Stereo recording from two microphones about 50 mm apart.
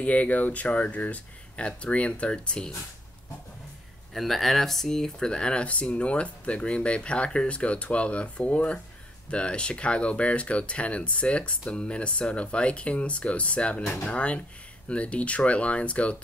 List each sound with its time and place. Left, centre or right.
0.0 s speech: left
4.1 s speech: centre; by 16.2 s left